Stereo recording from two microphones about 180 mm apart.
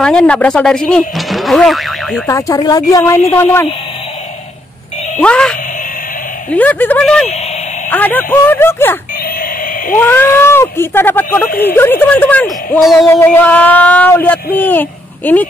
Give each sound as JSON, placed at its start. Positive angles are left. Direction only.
{"t": 0.0, "sound": "speech", "side_deg": 5}
{"t": 2.2, "sound": "speech", "side_deg": 15}
{"t": 5.2, "sound": "speech", "side_deg": 5}
{"t": 9.9, "sound": "speech", "side_deg": 10}